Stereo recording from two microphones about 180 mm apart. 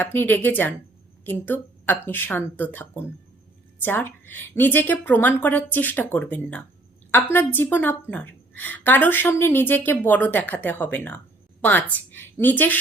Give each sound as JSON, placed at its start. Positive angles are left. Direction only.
{"t": 0.0, "sound": "a woman's voice", "side_deg": 10}